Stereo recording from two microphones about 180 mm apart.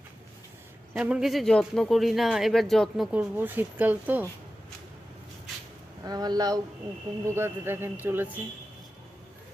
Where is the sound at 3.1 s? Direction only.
10° right (ahead or behind).